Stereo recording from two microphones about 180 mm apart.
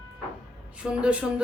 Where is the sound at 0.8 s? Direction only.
5° right (ahead or behind).